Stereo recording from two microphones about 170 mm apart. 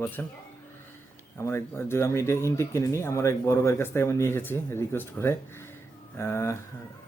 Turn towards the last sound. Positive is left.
turn(degrees=15)  # may be behind; listen again after turning